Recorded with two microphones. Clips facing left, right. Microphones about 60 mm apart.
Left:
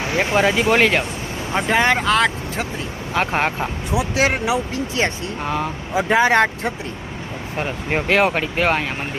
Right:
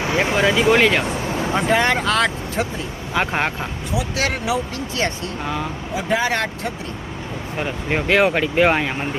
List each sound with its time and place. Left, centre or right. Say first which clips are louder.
0.3 s speech: left 2 dB; left
0.7 s speech: right 1 dB; centre
3.9 s speech: left 4 dB; left
7.6 s speech: even; centre